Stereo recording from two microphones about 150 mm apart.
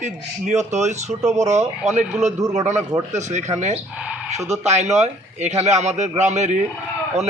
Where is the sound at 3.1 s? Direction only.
50° right (ahead or behind).